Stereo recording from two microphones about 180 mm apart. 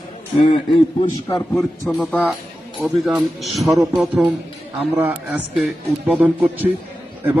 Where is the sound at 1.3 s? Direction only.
15° left (ahead or behind).